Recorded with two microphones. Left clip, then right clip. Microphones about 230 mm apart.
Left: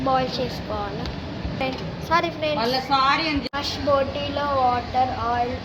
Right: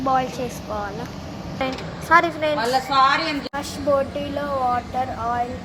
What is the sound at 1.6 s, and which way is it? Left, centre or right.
Speech, centre.